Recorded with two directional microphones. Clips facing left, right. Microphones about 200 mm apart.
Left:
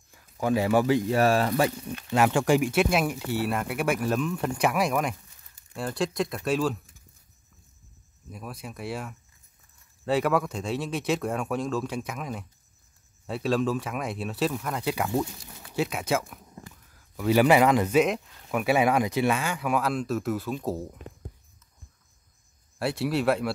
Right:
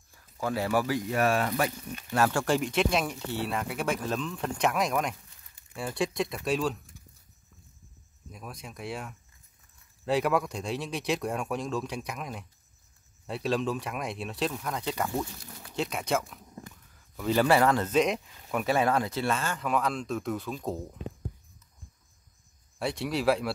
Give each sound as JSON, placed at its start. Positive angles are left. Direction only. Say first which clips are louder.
{"t": 0.1, "sound": "speech", "louder": "left 6 dB", "side_deg": 20}
{"t": 2.0, "sound": "speech", "louder": "left 4 dB", "side_deg": 15}
{"t": 8.3, "sound": "speech", "louder": "left 4 dB", "side_deg": 5}
{"t": 22.8, "sound": "speech", "louder": "left 4 dB", "side_deg": 5}